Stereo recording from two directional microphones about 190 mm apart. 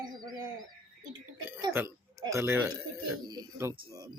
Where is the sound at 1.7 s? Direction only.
10° right (ahead or behind).